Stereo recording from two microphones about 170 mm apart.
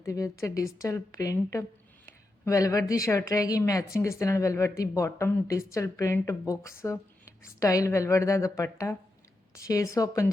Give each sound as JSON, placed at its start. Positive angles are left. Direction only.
{"t": 0.0, "sound": "a woman's voice", "side_deg": 20}